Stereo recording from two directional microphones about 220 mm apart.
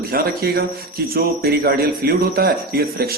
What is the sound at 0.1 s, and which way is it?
Speech, 40° right (ahead or behind).